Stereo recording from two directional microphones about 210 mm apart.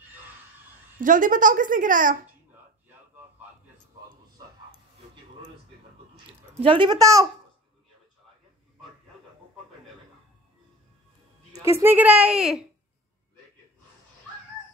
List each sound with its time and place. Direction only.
1.0 s speech: 40° right (ahead or behind)
6.6 s a child's voice: 25° right (ahead or behind)
11.5 s a child's voice: 15° right (ahead or behind)